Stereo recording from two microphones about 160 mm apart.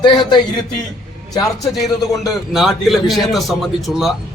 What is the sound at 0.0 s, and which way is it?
Speech, 30° left (ahead or behind).